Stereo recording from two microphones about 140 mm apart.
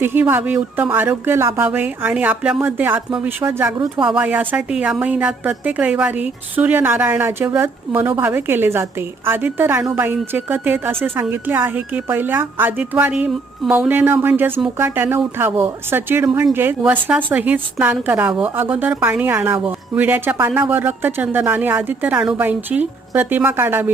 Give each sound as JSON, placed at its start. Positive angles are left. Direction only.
{"t": 0.0, "sound": "a woman's voice", "side_deg": -15}
{"t": 3.8, "sound": "speech", "side_deg": -35}
{"t": 4.1, "sound": "a woman's voice", "side_deg": -10}